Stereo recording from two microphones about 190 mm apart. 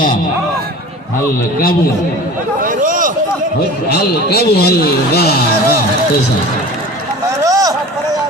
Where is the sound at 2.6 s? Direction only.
45° right (ahead or behind).